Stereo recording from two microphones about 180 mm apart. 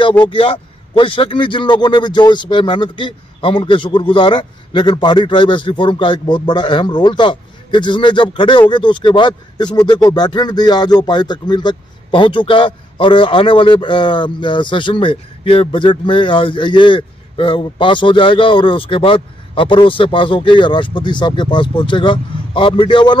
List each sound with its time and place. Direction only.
0.2 s a man's voice: 30° left (ahead or behind)